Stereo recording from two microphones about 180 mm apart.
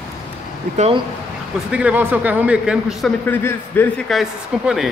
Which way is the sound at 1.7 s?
5° right (ahead or behind).